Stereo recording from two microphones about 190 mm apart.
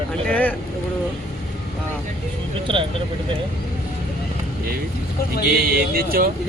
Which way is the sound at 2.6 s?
25° right (ahead or behind).